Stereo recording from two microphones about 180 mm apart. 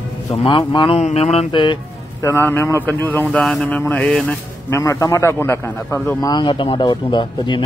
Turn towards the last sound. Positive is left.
turn(degrees=25)  # may be behind; listen again after turning